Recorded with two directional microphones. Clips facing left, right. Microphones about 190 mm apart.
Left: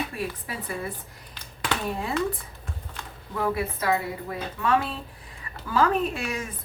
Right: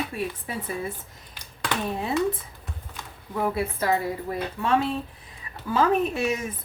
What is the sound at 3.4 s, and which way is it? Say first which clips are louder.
Speech: right 1 dB; 25° right (ahead or behind).